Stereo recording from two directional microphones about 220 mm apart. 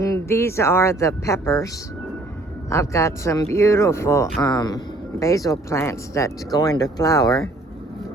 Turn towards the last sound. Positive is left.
turn(degrees=15)  # may be behind; listen again after turning